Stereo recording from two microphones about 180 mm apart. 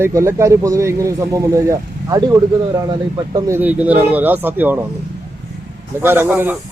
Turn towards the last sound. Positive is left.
turn(degrees=-10)  # may be behind; listen again after turning